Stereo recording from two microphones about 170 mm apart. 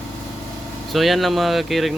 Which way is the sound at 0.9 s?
Centre (ahead or behind).